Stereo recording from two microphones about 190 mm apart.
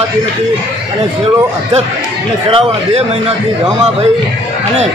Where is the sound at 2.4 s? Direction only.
30° right (ahead or behind).